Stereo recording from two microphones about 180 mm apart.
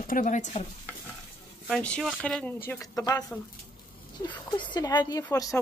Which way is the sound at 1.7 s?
5° left (ahead or behind).